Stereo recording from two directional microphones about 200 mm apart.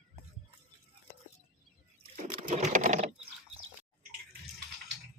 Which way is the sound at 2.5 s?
35° right (ahead or behind).